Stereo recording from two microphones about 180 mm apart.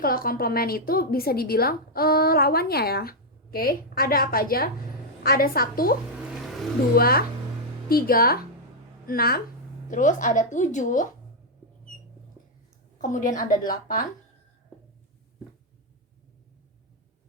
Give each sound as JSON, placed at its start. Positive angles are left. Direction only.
{"t": 0.0, "sound": "a woman's voice", "side_deg": 55}
{"t": 9.9, "sound": "a woman's voice", "side_deg": 45}
{"t": 13.0, "sound": "a woman's voice", "side_deg": 45}